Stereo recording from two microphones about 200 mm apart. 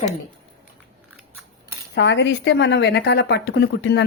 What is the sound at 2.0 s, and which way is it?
Speech, 60° left (ahead or behind).